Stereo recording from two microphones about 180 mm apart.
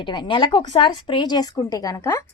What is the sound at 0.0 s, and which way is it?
Speech, 25° left (ahead or behind).